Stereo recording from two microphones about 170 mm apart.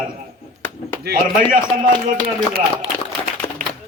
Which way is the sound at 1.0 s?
60° right (ahead or behind).